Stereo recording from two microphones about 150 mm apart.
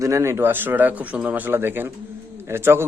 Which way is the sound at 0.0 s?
20° right (ahead or behind).